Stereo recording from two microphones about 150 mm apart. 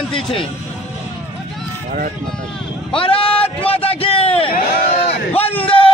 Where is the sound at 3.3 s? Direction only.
10° left (ahead or behind).